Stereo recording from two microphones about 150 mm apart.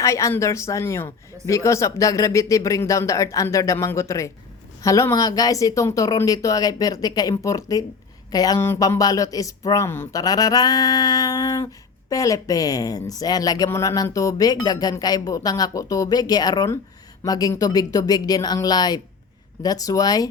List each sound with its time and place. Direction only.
0.0 s speech: 20° left (ahead or behind)